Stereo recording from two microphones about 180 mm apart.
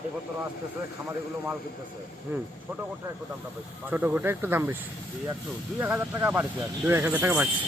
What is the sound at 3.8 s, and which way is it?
Speech, 10° right (ahead or behind).